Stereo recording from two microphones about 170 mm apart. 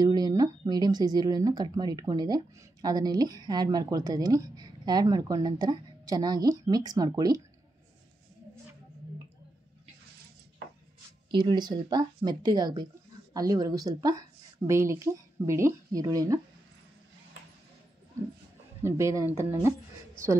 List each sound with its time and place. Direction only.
0.0 s speech: 20° right (ahead or behind)
11.2 s speech: 25° right (ahead or behind)
18.8 s speech: 15° right (ahead or behind)